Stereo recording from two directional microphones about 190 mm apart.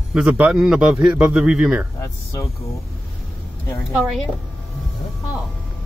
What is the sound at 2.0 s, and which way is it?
Speech, 15° left (ahead or behind).